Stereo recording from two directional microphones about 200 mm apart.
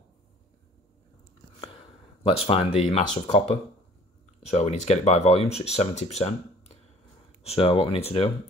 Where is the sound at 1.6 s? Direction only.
25° left (ahead or behind).